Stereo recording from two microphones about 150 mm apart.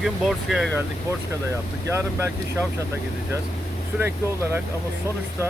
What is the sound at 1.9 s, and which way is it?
Speech, 20° right (ahead or behind).